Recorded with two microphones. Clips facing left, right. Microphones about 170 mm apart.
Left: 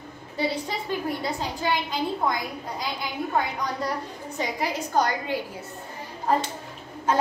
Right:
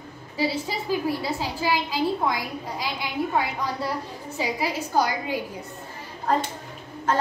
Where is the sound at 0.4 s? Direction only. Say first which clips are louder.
Right 1 dB; 5° right (ahead or behind).